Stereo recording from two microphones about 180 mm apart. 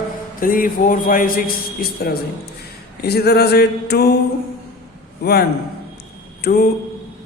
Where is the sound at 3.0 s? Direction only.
60° left (ahead or behind).